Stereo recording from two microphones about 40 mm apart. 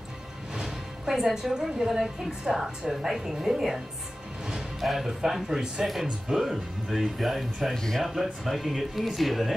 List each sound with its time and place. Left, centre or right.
0.6 s a woman's voice: centre
4.8 s speech: centre
6.0 s a woman's voice: centre
6.4 s speech: centre
7.7 s speech: centre
8.0 s speech: centre